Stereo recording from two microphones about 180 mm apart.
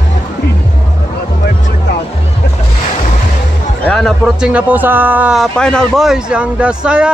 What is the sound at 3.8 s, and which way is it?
A man's voice, 5° left (ahead or behind).